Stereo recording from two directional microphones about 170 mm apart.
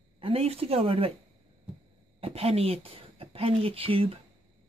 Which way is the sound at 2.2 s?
35° right (ahead or behind).